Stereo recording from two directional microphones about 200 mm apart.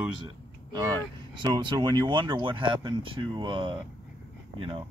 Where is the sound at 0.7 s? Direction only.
20° right (ahead or behind).